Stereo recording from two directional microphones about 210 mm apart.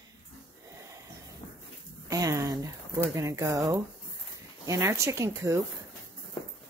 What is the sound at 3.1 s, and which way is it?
Speech, 15° right (ahead or behind).